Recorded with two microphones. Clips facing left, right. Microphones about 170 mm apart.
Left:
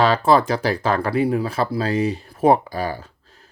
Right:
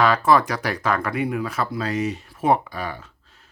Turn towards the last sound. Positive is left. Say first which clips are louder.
# left 5 dB
turn(degrees=35)  # may be behind; listen again after turning